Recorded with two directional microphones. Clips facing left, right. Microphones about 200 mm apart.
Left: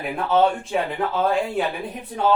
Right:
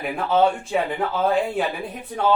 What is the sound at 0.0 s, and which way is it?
Speech, centre (ahead or behind).